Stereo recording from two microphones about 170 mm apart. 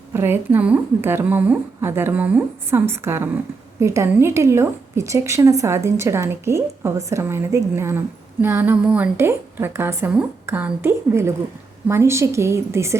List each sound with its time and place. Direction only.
0.1 s a woman's voice: 15° right (ahead or behind)